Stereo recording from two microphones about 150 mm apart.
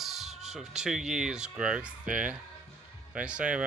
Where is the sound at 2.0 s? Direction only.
60° right (ahead or behind).